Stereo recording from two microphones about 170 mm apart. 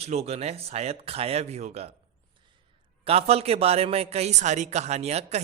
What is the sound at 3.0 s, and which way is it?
A man's voice, 35° right (ahead or behind).